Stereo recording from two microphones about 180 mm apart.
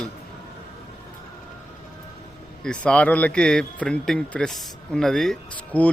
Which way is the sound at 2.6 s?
5° left (ahead or behind).